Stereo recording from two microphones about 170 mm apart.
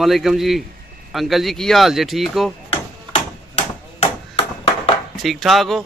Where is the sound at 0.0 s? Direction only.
Centre (ahead or behind).